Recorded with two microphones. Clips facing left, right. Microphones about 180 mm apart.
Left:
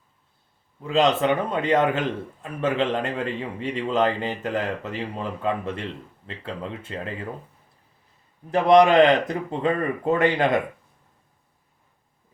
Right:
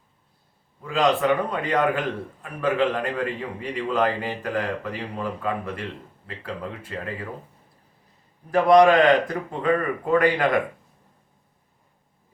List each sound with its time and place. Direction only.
0.9 s a man's voice: 25° left (ahead or behind)
8.4 s a man's voice: 25° left (ahead or behind)